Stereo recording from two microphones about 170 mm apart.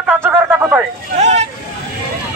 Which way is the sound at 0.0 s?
10° right (ahead or behind).